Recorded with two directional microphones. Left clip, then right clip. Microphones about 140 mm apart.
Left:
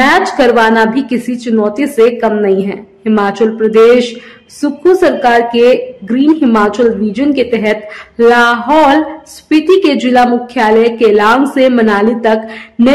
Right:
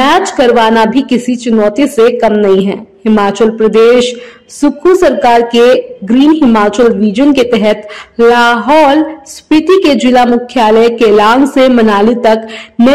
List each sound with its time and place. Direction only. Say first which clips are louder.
0.0 s a woman's voice: right 1 dB; 25° right (ahead or behind)